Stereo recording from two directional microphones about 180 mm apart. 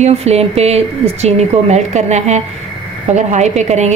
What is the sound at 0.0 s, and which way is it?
A woman's voice, 35° right (ahead or behind).